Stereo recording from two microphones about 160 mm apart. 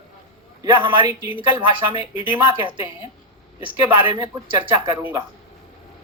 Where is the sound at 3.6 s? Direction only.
25° right (ahead or behind).